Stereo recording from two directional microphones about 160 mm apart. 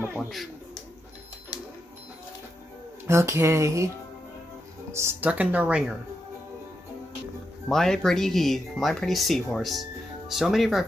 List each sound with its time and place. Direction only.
1.5 s printer: 20° left (ahead or behind)
3.1 s speech: 20° right (ahead or behind)
4.9 s speech: 15° right (ahead or behind)
7.6 s speech: 5° left (ahead or behind)